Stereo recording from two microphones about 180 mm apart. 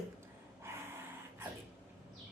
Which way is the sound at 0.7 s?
15° right (ahead or behind).